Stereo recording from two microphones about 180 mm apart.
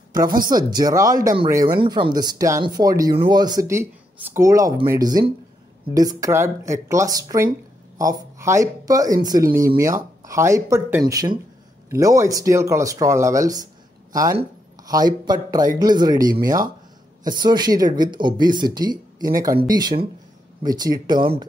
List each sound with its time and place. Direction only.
0.2 s speech: 20° right (ahead or behind)
14.8 s speech: 20° right (ahead or behind)